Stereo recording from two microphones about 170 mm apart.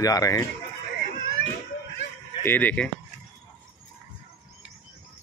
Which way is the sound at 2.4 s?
10° left (ahead or behind).